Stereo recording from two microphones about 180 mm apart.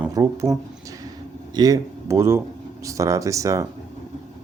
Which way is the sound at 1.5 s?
20° right (ahead or behind).